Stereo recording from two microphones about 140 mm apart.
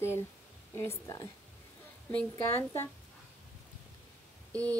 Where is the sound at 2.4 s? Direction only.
15° left (ahead or behind).